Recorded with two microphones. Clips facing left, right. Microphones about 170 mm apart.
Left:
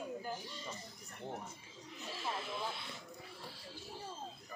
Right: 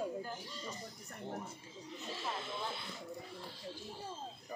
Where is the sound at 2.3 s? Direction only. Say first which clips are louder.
Even; centre (ahead or behind).